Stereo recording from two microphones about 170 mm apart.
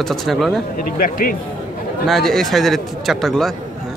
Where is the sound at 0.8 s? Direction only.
55° left (ahead or behind).